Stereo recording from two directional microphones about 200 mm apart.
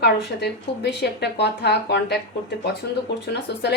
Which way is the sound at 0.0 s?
55° left (ahead or behind).